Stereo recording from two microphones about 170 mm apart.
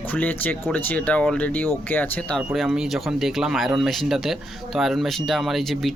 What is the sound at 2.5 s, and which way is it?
Speech, centre (ahead or behind).